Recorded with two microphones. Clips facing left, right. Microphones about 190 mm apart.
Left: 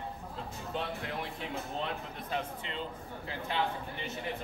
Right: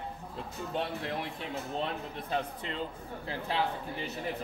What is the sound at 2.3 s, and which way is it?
Speech, 40° right (ahead or behind).